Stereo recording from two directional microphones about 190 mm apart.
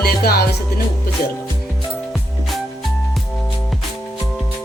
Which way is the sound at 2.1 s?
Centre (ahead or behind).